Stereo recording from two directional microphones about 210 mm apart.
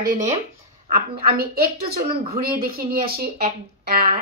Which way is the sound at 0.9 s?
45° right (ahead or behind).